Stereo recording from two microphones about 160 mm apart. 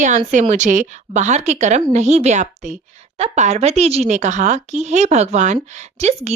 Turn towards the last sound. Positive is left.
turn(degrees=-40)  # may be behind; listen again after turning